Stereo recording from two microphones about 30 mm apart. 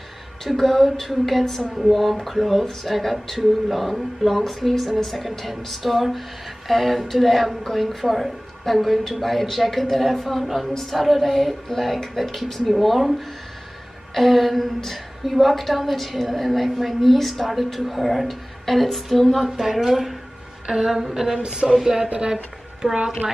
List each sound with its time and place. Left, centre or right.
0.4 s a woman's voice: centre
1.8 s a woman's voice: centre
10.7 s a woman's voice: centre
11.0 s a woman's voice: centre
14.1 s a woman's voice: centre
21.4 s speech: right
21.8 s a woman's voice: centre